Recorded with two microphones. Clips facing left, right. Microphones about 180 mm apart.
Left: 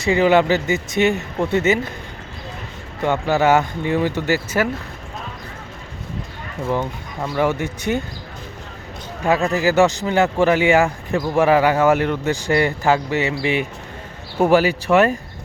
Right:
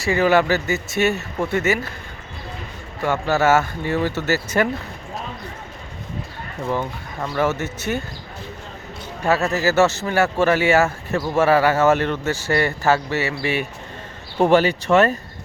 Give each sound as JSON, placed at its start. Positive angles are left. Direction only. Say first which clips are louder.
{"t": 0.0, "sound": "speech", "louder": "left 2 dB", "side_deg": 15}
{"t": 3.0, "sound": "speech", "louder": "left 2 dB", "side_deg": 15}
{"t": 7.2, "sound": "speech", "louder": "left 2 dB", "side_deg": 15}
{"t": 9.2, "sound": "speech", "louder": "left 2 dB", "side_deg": 15}